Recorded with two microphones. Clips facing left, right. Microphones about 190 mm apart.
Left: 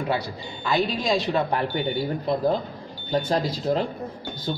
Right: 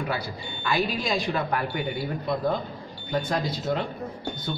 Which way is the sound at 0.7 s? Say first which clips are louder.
Left 4 dB; 25° left (ahead or behind).